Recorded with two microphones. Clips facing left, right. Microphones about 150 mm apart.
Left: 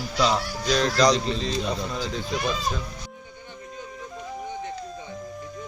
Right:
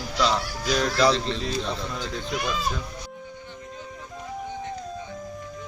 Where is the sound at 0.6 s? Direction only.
5° right (ahead or behind).